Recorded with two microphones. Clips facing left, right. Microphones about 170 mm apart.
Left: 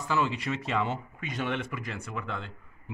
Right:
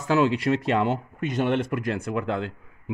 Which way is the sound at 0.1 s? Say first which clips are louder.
Right 8 dB; 80° right.